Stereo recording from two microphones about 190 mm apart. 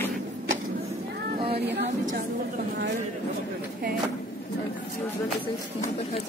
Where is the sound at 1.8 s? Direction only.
45° right (ahead or behind).